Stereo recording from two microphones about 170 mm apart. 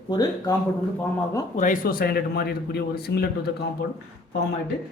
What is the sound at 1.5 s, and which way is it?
A man's voice, 50° left (ahead or behind).